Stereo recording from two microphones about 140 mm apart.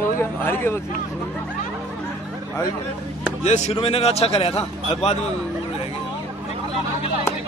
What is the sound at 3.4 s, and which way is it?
Speech, 50° left (ahead or behind).